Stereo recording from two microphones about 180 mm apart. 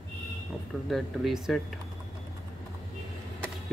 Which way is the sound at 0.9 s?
Centre (ahead or behind).